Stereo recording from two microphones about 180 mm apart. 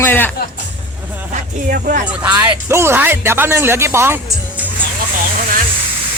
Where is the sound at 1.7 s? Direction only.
50° right (ahead or behind).